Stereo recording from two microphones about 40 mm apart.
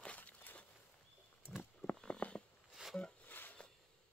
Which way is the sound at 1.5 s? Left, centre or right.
Right.